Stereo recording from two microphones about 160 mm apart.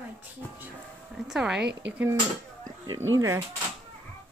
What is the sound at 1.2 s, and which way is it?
A woman's voice, 5° right (ahead or behind).